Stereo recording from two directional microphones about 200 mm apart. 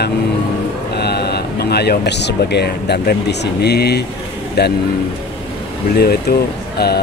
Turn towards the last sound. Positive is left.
turn(degrees=55)  # may be behind; listen again after turning